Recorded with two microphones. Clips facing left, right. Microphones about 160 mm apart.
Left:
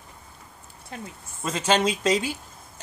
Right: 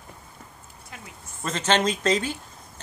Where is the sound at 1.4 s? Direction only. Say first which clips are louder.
Left 1 dB; 10° left (ahead or behind).